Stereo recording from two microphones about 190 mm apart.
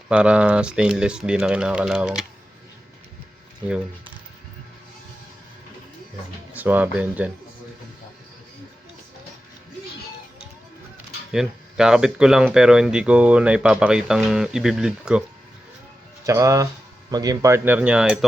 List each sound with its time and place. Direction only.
0.1 s speech: 5° right (ahead or behind)
6.5 s speech: 10° right (ahead or behind)
11.3 s speech: 5° right (ahead or behind)
16.2 s speech: 15° right (ahead or behind)